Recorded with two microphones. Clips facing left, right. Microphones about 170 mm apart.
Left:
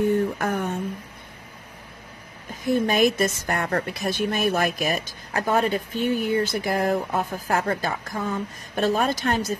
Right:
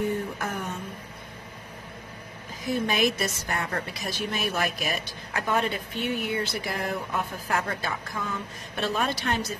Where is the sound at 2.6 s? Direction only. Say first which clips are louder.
Left 5 dB; 50° left (ahead or behind).